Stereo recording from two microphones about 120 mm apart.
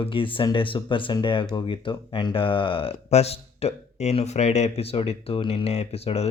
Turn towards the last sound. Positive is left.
turn(degrees=60)  # may be behind; listen again after turning